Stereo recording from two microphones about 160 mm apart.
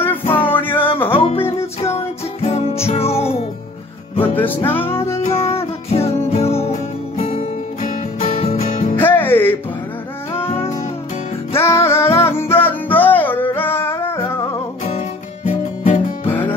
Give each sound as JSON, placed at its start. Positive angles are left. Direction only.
{"t": 0.5, "sound": "music", "side_deg": 10}
{"t": 1.8, "sound": "music", "side_deg": 40}
{"t": 4.2, "sound": "music", "side_deg": 10}
{"t": 5.2, "sound": "music", "side_deg": 40}
{"t": 8.5, "sound": "music", "side_deg": 50}
{"t": 8.9, "sound": "music", "side_deg": 15}
{"t": 11.5, "sound": "music", "side_deg": 15}
{"t": 14.9, "sound": "music", "side_deg": 40}
{"t": 16.3, "sound": "music", "side_deg": 10}